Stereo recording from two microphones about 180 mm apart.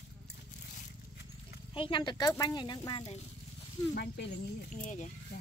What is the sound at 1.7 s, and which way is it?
Speech, 30° left (ahead or behind).